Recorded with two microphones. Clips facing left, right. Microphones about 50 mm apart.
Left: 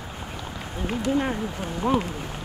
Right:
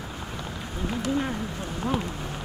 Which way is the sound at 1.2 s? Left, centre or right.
Left.